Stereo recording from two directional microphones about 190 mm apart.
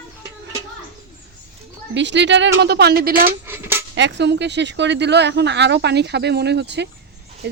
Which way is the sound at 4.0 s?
65° right (ahead or behind).